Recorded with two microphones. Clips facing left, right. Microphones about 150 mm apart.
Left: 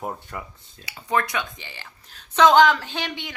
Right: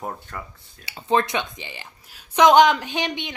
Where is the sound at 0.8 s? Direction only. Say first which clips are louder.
Right 3 dB; 25° right (ahead or behind).